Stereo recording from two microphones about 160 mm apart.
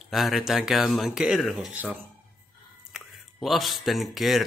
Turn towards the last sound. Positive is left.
turn(degrees=0)  # may be behind; listen again after turning